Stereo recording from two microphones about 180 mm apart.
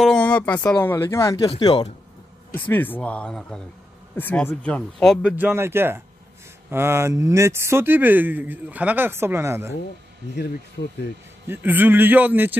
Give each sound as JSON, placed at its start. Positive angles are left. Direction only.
{"t": 0.0, "sound": "speech", "side_deg": 5}
{"t": 2.5, "sound": "speech", "side_deg": 10}
{"t": 5.4, "sound": "speech", "side_deg": -15}
{"t": 10.3, "sound": "speech", "side_deg": 70}
{"t": 11.4, "sound": "speech", "side_deg": -10}